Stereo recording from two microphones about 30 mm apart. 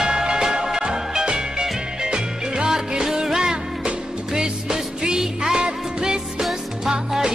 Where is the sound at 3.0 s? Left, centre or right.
Centre.